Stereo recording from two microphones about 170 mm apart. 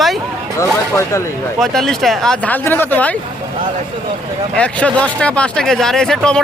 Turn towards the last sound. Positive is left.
turn(degrees=5)  # may be behind; listen again after turning